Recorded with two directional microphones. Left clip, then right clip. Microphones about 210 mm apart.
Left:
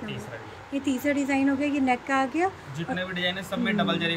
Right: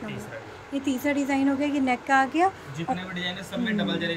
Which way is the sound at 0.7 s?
Centre (ahead or behind).